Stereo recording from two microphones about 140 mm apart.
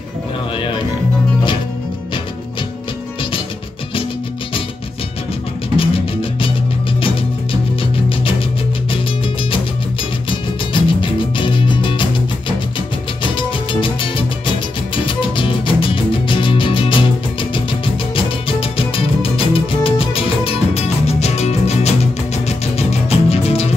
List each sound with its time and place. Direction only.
5.8 s music: 40° left (ahead or behind)
10.7 s music: 35° left (ahead or behind)